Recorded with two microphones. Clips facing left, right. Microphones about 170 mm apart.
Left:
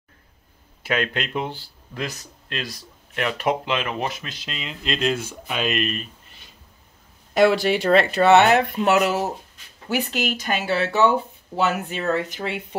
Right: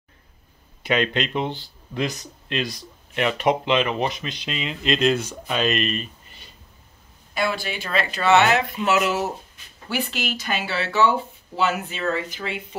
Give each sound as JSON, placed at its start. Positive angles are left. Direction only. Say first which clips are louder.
{"t": 0.8, "sound": "speech", "louder": "right 2 dB", "side_deg": 5}
{"t": 7.3, "sound": "speech", "louder": "left 9 dB", "side_deg": 85}
{"t": 9.0, "sound": "speech", "louder": "left 1 dB", "side_deg": 40}